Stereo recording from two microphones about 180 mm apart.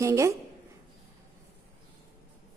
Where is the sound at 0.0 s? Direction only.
15° right (ahead or behind).